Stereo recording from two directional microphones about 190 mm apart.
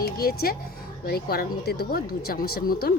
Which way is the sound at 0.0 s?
55° left (ahead or behind).